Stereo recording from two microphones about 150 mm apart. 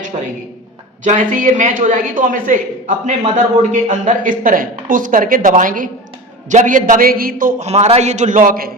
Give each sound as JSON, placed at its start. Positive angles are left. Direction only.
{"t": 0.1, "sound": "a man's voice", "side_deg": -50}
{"t": 7.6, "sound": "a man's voice", "side_deg": -45}